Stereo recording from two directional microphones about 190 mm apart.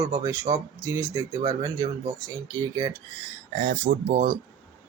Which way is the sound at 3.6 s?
40° right (ahead or behind).